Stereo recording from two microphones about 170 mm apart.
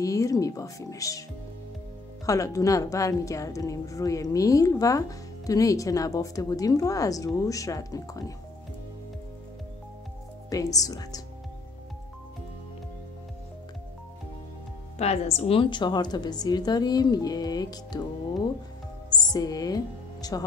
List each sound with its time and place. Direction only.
0.0 s a woman's voice: 20° left (ahead or behind)
2.2 s a woman's voice: 20° left (ahead or behind)
10.5 s a woman's voice: 20° left (ahead or behind)
15.0 s a woman's voice: 40° left (ahead or behind); by 20.4 s 20° left (ahead or behind)